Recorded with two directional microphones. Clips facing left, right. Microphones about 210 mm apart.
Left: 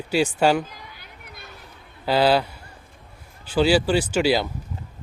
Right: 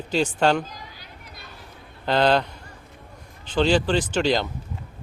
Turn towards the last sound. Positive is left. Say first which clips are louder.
# left 2 dB
turn(degrees=10)  # may be behind; listen again after turning